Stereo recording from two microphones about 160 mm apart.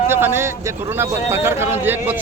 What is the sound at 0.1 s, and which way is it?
A man's voice, 15° right (ahead or behind).